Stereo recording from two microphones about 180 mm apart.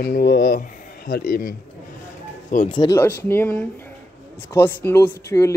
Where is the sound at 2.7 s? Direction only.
25° left (ahead or behind).